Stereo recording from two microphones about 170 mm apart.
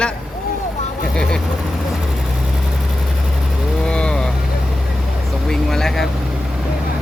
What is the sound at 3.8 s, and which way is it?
Vehicle, 5° left (ahead or behind).